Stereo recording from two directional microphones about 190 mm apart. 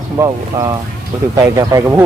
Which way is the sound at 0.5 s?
20° right (ahead or behind).